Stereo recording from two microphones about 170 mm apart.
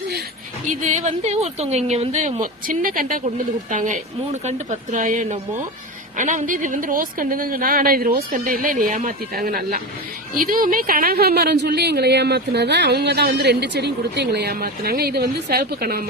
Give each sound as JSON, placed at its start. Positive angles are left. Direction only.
{"t": 0.7, "sound": "a woman's voice", "side_deg": -45}